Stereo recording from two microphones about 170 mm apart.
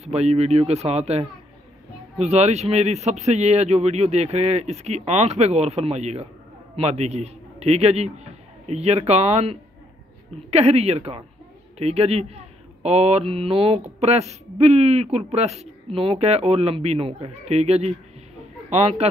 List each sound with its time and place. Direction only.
0.0 s a man's voice: 40° right (ahead or behind)